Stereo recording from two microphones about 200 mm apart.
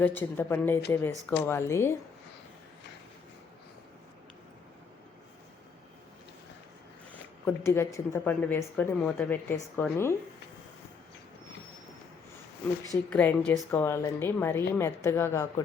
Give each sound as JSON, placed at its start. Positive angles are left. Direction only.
{"t": 0.0, "sound": "speech", "side_deg": 10}
{"t": 7.4, "sound": "speech", "side_deg": 10}
{"t": 13.1, "sound": "speech", "side_deg": 5}